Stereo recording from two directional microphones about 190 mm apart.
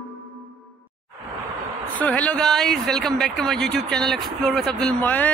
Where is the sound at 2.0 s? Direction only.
5° left (ahead or behind).